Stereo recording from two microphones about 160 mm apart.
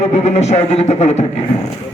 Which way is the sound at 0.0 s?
45° left (ahead or behind).